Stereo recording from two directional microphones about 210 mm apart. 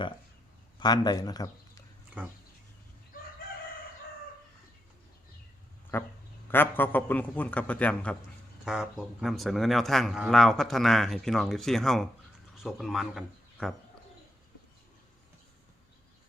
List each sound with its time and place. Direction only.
0.8 s speech: 20° left (ahead or behind)
3.4 s chicken: 40° left (ahead or behind)
6.5 s a man's voice: 10° left (ahead or behind)